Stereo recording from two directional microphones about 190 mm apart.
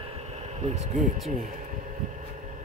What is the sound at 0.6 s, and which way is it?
Speech, 35° right (ahead or behind).